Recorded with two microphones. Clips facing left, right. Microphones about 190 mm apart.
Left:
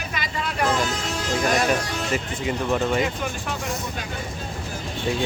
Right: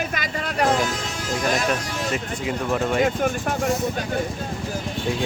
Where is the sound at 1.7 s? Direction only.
Centre (ahead or behind).